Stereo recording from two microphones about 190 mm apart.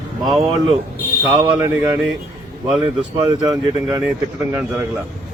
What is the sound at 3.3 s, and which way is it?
Speech, 20° right (ahead or behind).